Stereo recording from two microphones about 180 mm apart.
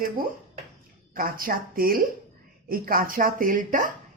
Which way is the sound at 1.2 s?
50° right (ahead or behind).